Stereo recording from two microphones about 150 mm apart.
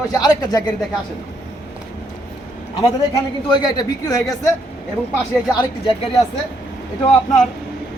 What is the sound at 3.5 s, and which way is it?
Speech, 25° left (ahead or behind).